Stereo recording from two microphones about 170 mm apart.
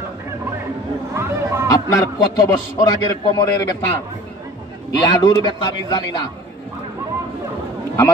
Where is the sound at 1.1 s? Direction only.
15° right (ahead or behind).